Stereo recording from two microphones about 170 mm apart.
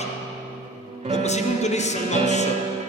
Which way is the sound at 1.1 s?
40° left (ahead or behind).